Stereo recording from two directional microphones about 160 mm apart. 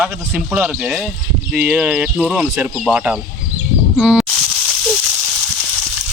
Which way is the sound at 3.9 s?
5° right (ahead or behind).